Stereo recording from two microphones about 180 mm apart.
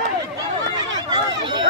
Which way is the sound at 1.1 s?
25° right (ahead or behind).